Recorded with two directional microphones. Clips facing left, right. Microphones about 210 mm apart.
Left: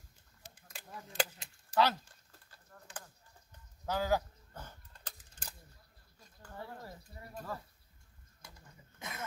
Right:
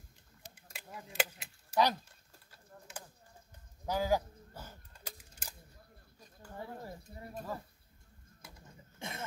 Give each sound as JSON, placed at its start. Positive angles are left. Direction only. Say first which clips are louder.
{"t": 0.7, "sound": "keys jangling", "louder": "even", "side_deg": -10}
{"t": 3.8, "sound": "a sound", "louder": "right 1 dB", "side_deg": -10}
{"t": 9.0, "sound": "cough", "louder": "right 3 dB", "side_deg": -30}